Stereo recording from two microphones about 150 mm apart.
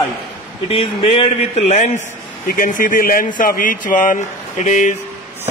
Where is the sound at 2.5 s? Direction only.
65° left (ahead or behind).